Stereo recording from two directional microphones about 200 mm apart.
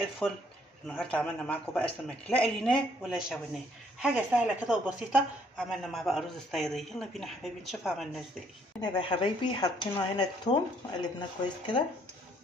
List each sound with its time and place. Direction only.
0.2 s a man's voice: 10° left (ahead or behind)
8.8 s speech: 25° left (ahead or behind)